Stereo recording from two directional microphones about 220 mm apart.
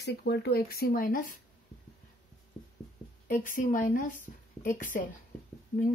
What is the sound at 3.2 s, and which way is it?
Speech, 35° left (ahead or behind).